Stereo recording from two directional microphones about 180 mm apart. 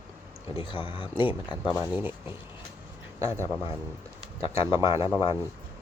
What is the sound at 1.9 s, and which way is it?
Speech, 10° right (ahead or behind).